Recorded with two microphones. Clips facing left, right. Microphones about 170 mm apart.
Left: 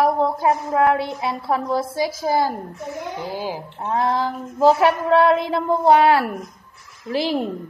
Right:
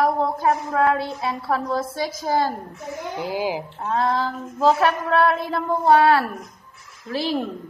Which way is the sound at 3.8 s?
15° left (ahead or behind).